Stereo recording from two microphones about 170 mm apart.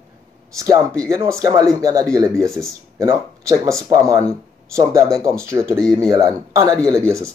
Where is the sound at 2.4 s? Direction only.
Centre (ahead or behind).